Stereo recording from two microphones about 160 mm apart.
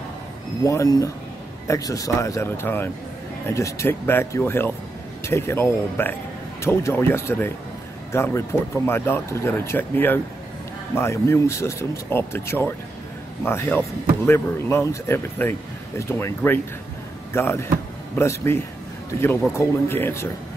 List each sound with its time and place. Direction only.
0.7 s speech: 20° left (ahead or behind)